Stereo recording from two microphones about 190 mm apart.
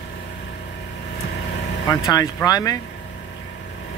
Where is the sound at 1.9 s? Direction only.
15° left (ahead or behind).